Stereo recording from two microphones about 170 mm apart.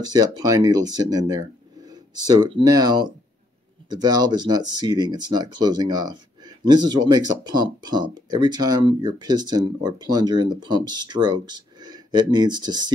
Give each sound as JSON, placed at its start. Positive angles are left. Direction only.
{"t": 0.1, "sound": "speech", "side_deg": -25}